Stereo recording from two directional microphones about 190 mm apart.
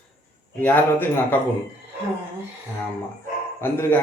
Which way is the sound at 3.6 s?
10° left (ahead or behind).